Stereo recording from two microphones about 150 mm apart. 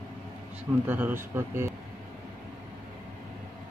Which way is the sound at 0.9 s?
10° right (ahead or behind).